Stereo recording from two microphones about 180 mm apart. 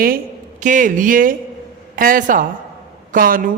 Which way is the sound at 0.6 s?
45° right (ahead or behind).